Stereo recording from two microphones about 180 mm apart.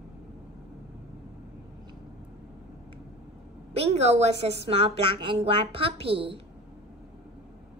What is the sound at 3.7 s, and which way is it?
A woman's voice, 35° right (ahead or behind).